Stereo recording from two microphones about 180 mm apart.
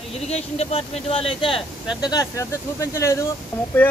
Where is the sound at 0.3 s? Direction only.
35° left (ahead or behind).